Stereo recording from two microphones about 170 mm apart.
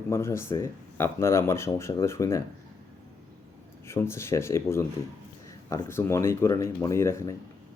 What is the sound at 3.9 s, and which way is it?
Speech, 15° left (ahead or behind).